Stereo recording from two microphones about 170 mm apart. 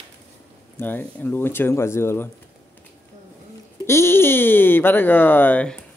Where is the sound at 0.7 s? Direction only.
10° left (ahead or behind).